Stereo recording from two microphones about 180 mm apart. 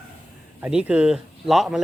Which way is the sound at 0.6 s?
5° right (ahead or behind).